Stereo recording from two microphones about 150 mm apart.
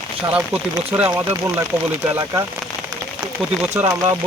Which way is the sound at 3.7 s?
15° right (ahead or behind).